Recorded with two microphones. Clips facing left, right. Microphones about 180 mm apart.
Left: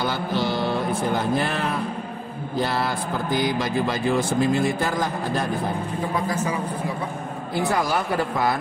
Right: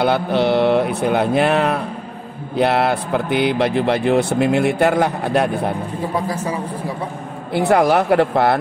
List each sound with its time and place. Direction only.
0.0 s speech: 65° right (ahead or behind)
7.5 s speech: 65° right (ahead or behind)